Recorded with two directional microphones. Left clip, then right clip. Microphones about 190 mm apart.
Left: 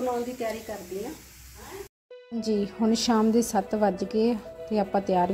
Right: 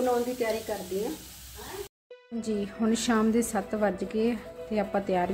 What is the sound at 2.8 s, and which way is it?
Speech, 15° left (ahead or behind).